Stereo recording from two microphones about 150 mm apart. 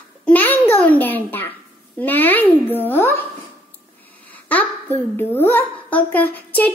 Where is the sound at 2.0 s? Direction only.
10° left (ahead or behind).